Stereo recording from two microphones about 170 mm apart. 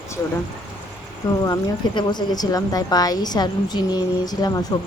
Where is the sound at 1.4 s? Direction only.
25° left (ahead or behind).